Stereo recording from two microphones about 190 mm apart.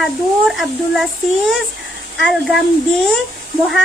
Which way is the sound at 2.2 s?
Centre (ahead or behind).